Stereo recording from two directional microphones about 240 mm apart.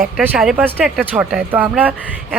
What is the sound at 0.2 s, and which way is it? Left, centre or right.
A woman's voice, centre.